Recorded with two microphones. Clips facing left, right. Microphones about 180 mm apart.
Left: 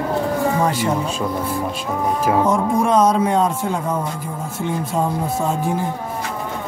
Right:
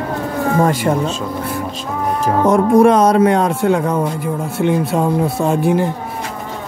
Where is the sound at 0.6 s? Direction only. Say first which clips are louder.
Right 4 dB; 50° right (ahead or behind).